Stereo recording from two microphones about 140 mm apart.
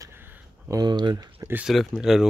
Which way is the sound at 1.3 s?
15° right (ahead or behind).